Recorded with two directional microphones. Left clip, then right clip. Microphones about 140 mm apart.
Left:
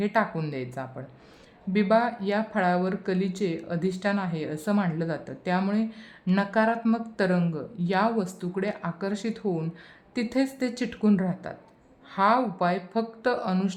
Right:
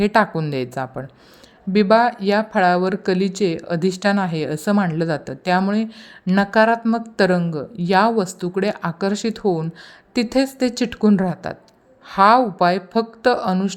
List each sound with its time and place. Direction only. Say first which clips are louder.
0.0 s speech: right 9 dB; 40° right (ahead or behind)